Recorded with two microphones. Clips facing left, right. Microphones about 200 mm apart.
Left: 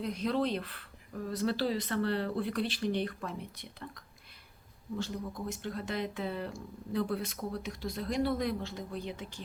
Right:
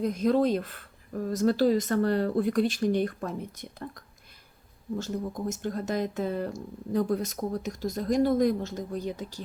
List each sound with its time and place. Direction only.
0.0 s speech: 45° right (ahead or behind)